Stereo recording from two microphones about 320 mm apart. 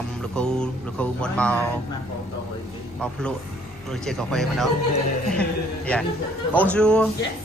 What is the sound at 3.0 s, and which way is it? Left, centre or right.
Speech, centre.